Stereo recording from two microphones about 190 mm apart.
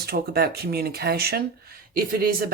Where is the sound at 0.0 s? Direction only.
55° right (ahead or behind).